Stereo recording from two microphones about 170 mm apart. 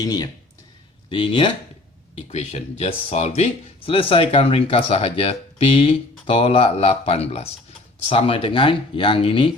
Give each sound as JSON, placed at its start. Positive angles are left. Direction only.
{"t": 0.0, "sound": "speech", "side_deg": 20}